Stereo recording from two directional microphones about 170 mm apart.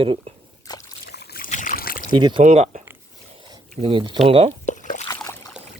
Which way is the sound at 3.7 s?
30° right (ahead or behind).